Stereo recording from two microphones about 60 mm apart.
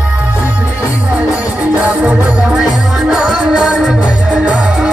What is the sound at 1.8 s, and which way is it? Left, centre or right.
Music, right.